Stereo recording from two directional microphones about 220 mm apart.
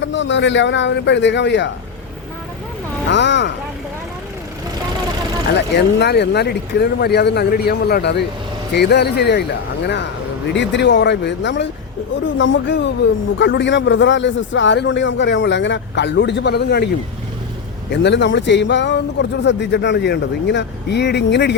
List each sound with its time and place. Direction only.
0.0 s speech: 55° left (ahead or behind)
3.1 s speech: 50° left (ahead or behind)
5.5 s speech: 50° left (ahead or behind)
10.5 s speech: 55° left (ahead or behind)
17.9 s speech: 55° left (ahead or behind)